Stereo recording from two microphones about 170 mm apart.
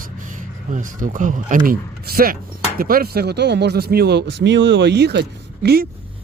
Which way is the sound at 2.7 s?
60° right (ahead or behind).